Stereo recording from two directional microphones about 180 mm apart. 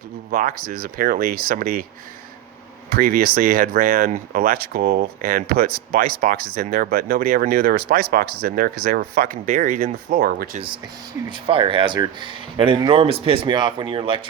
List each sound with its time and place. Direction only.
0.3 s speech: 50° right (ahead or behind)
2.9 s speech: 55° right (ahead or behind)
11.3 s speech: 30° right (ahead or behind)